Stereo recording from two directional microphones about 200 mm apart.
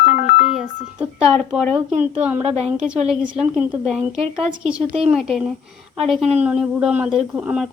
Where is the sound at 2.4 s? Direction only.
30° right (ahead or behind).